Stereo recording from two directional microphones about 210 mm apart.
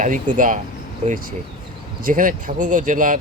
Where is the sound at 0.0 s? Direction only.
40° right (ahead or behind).